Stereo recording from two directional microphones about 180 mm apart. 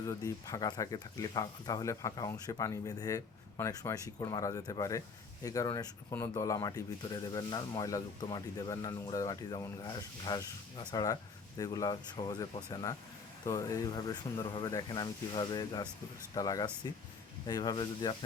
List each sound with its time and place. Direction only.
0.0 s speech: 20° left (ahead or behind)